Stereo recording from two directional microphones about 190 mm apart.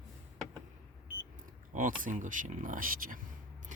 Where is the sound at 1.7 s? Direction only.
45° right (ahead or behind).